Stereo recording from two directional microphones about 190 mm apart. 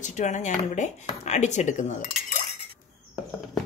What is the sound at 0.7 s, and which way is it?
Cutlery, 40° left (ahead or behind).